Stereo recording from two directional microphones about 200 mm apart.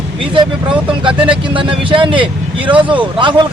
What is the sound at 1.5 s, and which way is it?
Speech, 25° right (ahead or behind).